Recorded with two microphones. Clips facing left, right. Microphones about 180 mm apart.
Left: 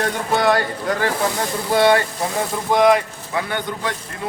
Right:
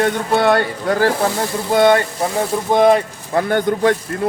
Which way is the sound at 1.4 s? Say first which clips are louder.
Right 2 dB; 20° right (ahead or behind).